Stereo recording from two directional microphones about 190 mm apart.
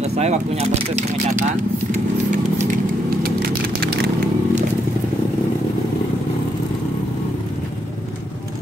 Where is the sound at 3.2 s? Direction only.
50° right (ahead or behind).